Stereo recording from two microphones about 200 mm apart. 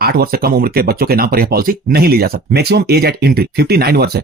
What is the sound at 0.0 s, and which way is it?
Speech, 50° right (ahead or behind).